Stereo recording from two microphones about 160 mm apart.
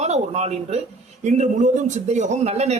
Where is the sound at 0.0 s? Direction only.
45° right (ahead or behind).